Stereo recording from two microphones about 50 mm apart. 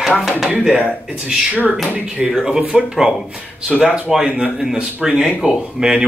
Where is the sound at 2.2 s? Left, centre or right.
Centre.